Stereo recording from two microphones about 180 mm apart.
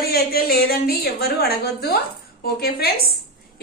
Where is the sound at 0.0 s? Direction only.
60° left (ahead or behind).